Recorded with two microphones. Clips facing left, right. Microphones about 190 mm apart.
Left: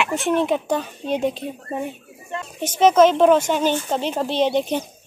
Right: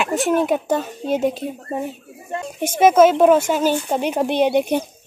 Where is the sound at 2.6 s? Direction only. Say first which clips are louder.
Right 2 dB; 10° right (ahead or behind).